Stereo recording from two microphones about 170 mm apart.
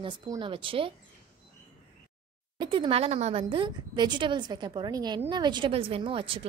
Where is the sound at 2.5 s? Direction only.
30° right (ahead or behind).